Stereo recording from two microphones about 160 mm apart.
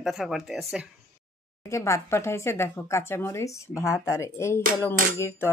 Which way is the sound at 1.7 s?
20° left (ahead or behind).